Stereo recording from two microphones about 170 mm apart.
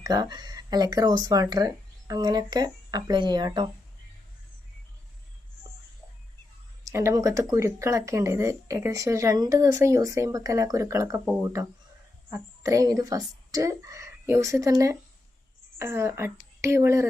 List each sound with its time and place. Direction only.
0.0 s speech: 20° right (ahead or behind)
6.8 s speech: 15° right (ahead or behind)
12.3 s speech: 20° right (ahead or behind)